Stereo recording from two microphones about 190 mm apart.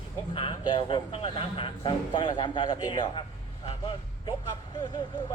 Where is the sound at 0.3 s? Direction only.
25° left (ahead or behind).